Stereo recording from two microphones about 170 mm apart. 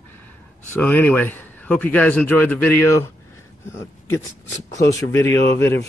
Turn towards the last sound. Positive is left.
turn(degrees=15)  # may be behind; listen again after turning